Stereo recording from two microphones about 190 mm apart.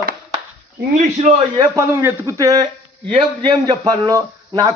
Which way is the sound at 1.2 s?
35° right (ahead or behind).